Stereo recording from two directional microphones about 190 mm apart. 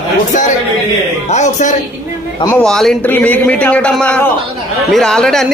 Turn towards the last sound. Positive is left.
turn(degrees=0)  # may be behind; listen again after turning